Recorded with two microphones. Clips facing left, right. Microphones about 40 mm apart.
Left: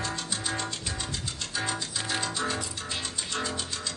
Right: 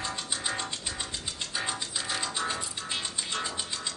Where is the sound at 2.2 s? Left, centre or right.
Right.